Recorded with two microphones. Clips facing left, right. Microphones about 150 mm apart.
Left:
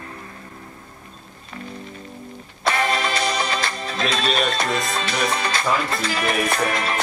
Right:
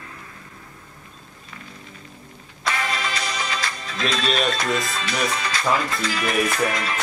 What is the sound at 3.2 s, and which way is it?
Music, 30° left (ahead or behind).